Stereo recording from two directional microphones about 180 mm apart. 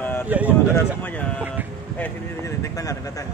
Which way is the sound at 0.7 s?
10° left (ahead or behind).